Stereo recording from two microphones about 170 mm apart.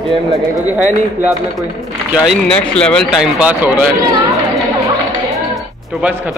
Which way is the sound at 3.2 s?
10° right (ahead or behind).